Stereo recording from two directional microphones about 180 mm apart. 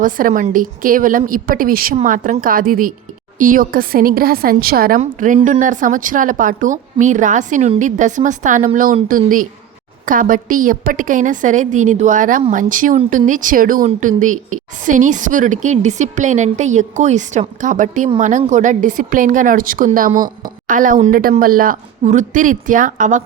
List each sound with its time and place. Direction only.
0.0 s a woman's voice: 50° right (ahead or behind)
4.9 s a woman's voice: 45° right (ahead or behind)